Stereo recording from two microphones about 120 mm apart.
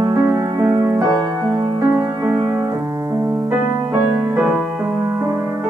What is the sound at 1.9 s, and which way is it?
Music, 15° right (ahead or behind).